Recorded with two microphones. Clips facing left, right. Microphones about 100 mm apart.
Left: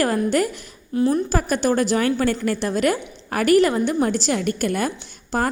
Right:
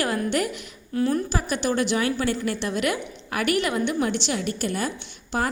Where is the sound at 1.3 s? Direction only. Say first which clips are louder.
Left 5 dB; 45° left (ahead or behind).